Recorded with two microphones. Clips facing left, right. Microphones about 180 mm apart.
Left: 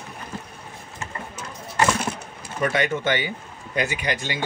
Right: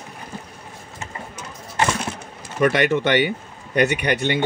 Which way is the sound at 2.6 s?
65° right (ahead or behind).